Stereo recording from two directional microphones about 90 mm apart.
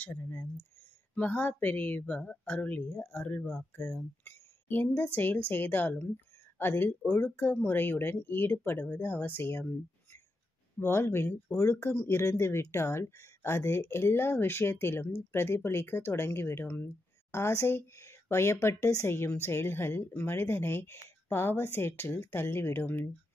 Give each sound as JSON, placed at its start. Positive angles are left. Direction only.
{"t": 0.0, "sound": "speech", "side_deg": 20}
{"t": 10.8, "sound": "speech", "side_deg": 30}